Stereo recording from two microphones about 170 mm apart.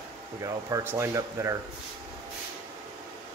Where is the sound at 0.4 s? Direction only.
20° right (ahead or behind).